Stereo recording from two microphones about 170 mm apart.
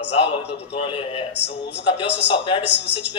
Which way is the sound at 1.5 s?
90° left.